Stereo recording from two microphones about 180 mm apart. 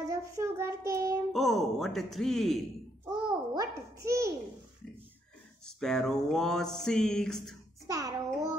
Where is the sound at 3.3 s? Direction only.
20° right (ahead or behind).